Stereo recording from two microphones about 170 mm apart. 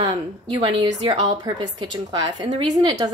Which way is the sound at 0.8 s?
20° right (ahead or behind).